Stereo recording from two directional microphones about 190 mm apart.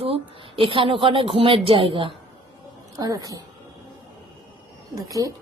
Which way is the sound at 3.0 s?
20° right (ahead or behind).